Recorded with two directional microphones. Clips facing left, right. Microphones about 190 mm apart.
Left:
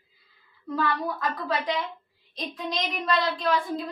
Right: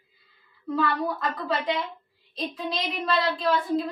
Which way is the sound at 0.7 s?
Centre (ahead or behind).